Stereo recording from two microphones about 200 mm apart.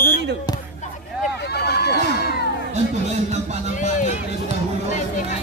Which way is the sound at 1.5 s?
55° left (ahead or behind).